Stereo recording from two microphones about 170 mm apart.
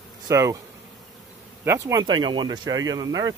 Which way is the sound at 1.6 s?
15° right (ahead or behind).